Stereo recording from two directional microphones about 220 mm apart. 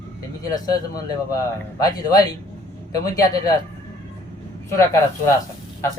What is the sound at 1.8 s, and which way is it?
Speech, 15° left (ahead or behind).